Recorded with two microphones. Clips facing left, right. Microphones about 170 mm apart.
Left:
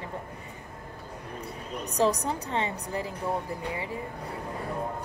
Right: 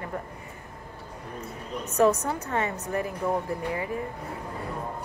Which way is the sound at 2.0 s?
30° left (ahead or behind).